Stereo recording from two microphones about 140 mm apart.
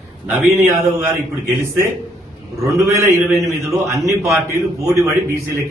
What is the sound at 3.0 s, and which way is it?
A man's voice, 20° right (ahead or behind).